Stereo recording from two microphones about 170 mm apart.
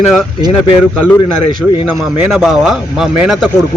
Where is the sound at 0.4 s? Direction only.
25° right (ahead or behind).